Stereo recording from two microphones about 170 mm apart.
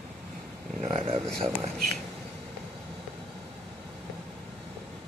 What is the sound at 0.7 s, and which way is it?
Speech, 40° right (ahead or behind).